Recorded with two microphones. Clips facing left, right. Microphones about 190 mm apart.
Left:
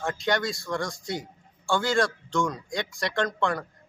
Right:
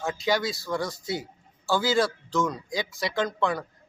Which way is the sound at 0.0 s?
Centre (ahead or behind).